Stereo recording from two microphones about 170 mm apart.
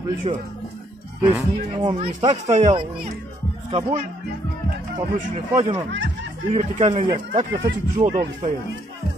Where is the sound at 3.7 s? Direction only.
30° right (ahead or behind).